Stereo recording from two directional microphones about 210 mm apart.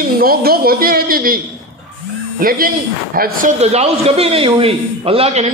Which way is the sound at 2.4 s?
45° right (ahead or behind).